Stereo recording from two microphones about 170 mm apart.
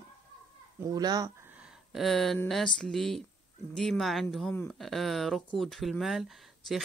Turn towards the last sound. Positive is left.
turn(degrees=0)  # may be behind; listen again after turning